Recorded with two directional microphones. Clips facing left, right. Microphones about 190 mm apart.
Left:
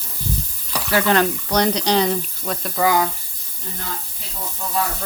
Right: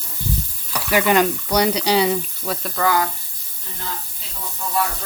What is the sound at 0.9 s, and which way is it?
Speech, 10° right (ahead or behind).